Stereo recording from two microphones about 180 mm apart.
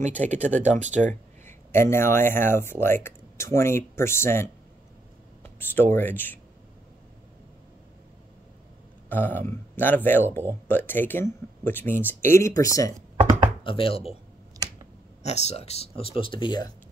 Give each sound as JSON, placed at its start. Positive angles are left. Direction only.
{"t": 0.3, "sound": "speech", "side_deg": -40}
{"t": 1.7, "sound": "speech", "side_deg": 15}
{"t": 5.4, "sound": "a sound", "side_deg": 10}
{"t": 5.9, "sound": "speech", "side_deg": 10}
{"t": 9.1, "sound": "speech", "side_deg": 10}
{"t": 13.7, "sound": "speech", "side_deg": 30}
{"t": 15.2, "sound": "speech", "side_deg": 40}